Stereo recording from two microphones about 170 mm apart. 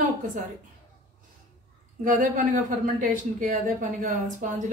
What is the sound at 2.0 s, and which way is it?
Speech, 50° right (ahead or behind).